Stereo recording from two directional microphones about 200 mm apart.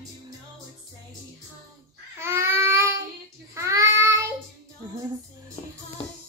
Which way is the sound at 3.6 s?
15° right (ahead or behind).